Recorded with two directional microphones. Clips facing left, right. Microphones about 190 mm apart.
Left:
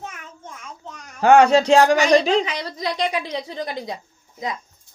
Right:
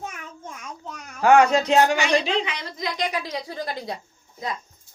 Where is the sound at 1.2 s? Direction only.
30° left (ahead or behind).